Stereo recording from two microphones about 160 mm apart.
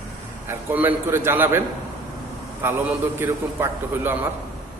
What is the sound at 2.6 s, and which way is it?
A man's voice, 15° right (ahead or behind).